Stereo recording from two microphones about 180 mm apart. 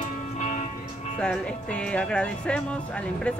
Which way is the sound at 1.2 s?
5° left (ahead or behind).